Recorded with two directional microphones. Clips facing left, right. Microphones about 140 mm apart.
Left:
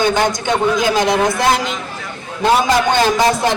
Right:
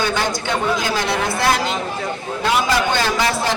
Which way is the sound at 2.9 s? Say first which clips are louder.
Left 5 dB; 20° left (ahead or behind).